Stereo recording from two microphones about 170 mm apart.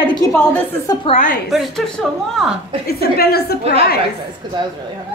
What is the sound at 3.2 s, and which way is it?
Speech, 70° left (ahead or behind).